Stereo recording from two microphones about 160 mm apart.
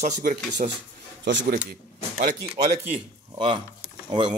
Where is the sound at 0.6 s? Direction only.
50° right (ahead or behind).